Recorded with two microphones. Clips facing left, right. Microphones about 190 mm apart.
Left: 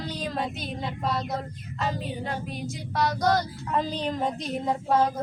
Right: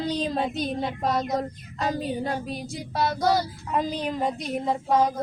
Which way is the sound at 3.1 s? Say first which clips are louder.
Right 1 dB; 10° right (ahead or behind).